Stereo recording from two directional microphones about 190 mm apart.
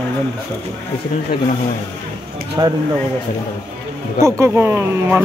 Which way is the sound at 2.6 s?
20° right (ahead or behind).